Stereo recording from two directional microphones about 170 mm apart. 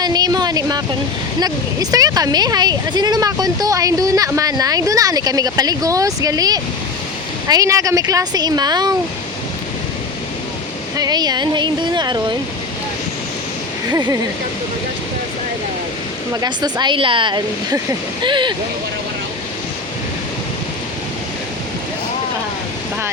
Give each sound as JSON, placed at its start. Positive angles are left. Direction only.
{"t": 0.0, "sound": "a sound", "side_deg": -25}
{"t": 1.4, "sound": "speech", "side_deg": -20}
{"t": 10.9, "sound": "speech", "side_deg": -25}
{"t": 13.8, "sound": "speech", "side_deg": -20}
{"t": 16.3, "sound": "speech", "side_deg": -25}